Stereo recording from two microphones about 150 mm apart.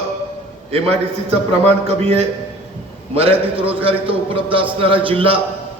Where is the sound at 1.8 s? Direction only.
40° right (ahead or behind).